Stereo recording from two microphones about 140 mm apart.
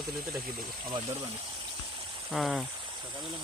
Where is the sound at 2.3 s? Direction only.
Centre (ahead or behind).